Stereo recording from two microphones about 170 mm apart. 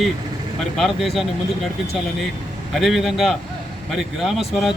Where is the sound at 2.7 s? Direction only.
Centre (ahead or behind).